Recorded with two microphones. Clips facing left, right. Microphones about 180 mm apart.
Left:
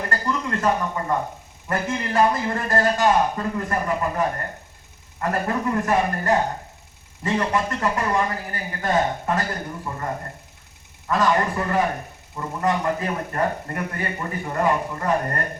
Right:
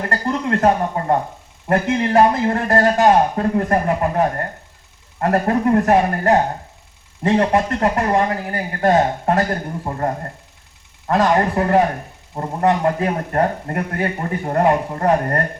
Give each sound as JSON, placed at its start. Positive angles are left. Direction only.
{"t": 0.1, "sound": "a man's voice", "side_deg": -55}
{"t": 11.1, "sound": "a man's voice", "side_deg": -60}